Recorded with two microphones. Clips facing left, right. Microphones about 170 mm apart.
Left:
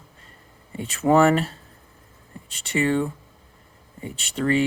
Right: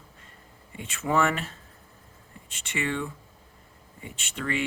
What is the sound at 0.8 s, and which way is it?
Speech, 35° left (ahead or behind).